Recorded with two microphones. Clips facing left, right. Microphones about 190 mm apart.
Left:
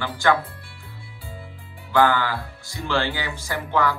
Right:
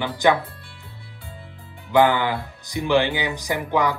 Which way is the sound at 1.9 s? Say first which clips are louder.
Right 2 dB; 20° right (ahead or behind).